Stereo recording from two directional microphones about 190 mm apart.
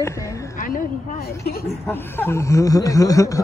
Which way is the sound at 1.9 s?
10° left (ahead or behind).